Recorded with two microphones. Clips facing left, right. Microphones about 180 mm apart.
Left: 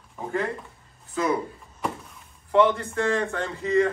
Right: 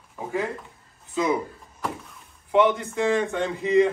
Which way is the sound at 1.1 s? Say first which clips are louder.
Right 1 dB; 20° right (ahead or behind).